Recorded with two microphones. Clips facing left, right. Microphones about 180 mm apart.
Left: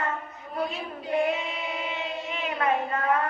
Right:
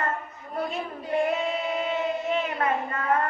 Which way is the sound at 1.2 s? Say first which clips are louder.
Right 2 dB; 50° right (ahead or behind).